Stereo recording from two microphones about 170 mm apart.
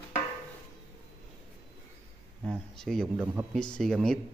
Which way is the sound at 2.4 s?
5° left (ahead or behind).